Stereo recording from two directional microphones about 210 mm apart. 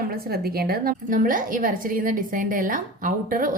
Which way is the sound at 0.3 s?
45° right (ahead or behind).